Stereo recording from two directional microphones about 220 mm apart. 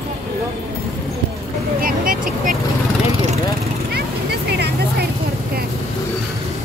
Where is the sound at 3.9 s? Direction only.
45° right (ahead or behind).